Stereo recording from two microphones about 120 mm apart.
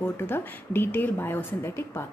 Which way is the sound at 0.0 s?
20° left (ahead or behind).